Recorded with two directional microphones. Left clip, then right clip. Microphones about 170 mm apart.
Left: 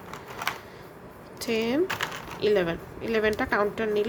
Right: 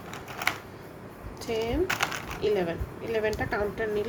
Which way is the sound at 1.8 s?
25° right (ahead or behind).